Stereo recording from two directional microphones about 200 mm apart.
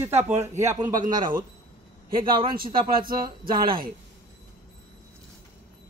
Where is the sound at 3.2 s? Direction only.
20° right (ahead or behind).